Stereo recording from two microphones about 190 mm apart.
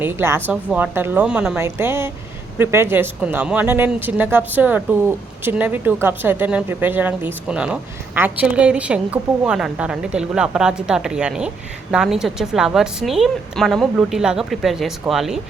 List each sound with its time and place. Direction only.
0.0 s speech: 10° right (ahead or behind)